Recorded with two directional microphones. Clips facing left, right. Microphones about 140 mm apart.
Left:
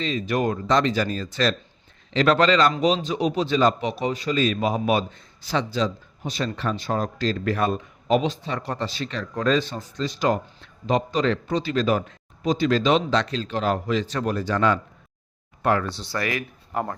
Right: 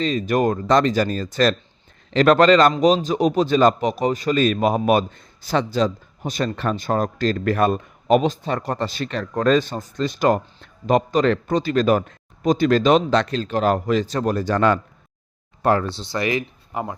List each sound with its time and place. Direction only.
0.0 s a man's voice: 45° right (ahead or behind)
15.6 s speech: 30° right (ahead or behind)
16.7 s speech: 5° right (ahead or behind)